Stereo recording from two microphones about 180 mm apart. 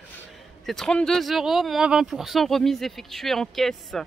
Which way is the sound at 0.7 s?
5° left (ahead or behind).